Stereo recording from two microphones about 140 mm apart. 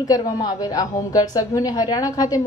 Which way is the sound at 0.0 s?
25° left (ahead or behind).